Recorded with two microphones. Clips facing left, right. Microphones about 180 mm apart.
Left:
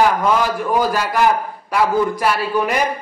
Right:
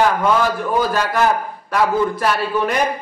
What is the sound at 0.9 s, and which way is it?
A man's voice, 10° left (ahead or behind).